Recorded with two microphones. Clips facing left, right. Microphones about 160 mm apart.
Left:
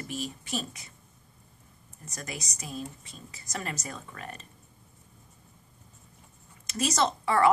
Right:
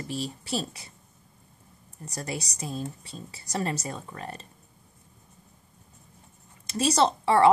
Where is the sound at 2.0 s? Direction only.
30° right (ahead or behind).